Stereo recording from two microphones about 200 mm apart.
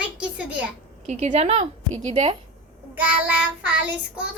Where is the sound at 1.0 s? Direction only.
35° right (ahead or behind).